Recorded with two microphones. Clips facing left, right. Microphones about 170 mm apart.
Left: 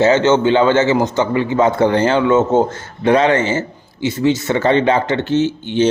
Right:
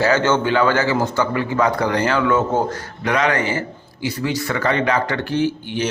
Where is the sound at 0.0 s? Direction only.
20° left (ahead or behind).